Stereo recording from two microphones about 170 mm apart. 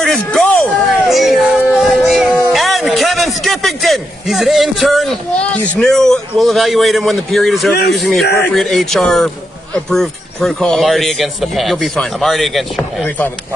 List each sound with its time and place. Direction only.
0.0 s a sound: 5° left (ahead or behind)
1.0 s music: centre (ahead or behind)
7.7 s speech: 75° left (ahead or behind)
8.0 s speech: centre (ahead or behind)